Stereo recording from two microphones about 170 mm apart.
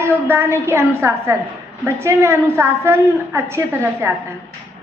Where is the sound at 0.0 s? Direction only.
15° right (ahead or behind).